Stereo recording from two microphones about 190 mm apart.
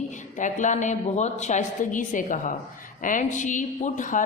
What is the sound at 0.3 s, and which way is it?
A woman's voice, 40° left (ahead or behind).